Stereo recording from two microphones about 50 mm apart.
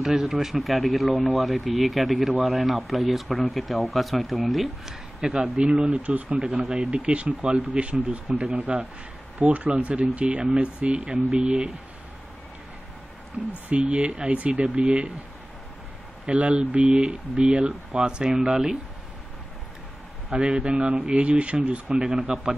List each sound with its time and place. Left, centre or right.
0.0 s speech: centre
5.2 s speech: centre
13.7 s speech: right
16.3 s speech: right
20.3 s speech: right
21.8 s speech: centre